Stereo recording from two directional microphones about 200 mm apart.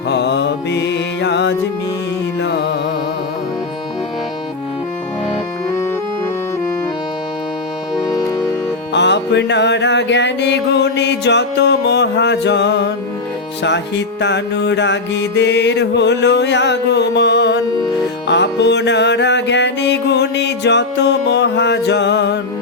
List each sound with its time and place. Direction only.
0.1 s mantra: 60° left (ahead or behind)
2.4 s music: 60° left (ahead or behind)
7.9 s music: 20° left (ahead or behind)
8.9 s music: 60° left (ahead or behind)